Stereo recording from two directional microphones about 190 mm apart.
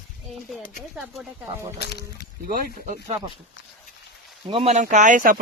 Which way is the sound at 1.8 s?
60° left (ahead or behind).